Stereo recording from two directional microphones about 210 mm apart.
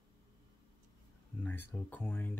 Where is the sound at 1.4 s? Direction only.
10° left (ahead or behind).